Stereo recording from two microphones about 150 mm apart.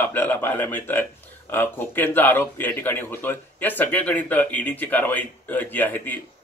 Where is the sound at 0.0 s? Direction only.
15° left (ahead or behind).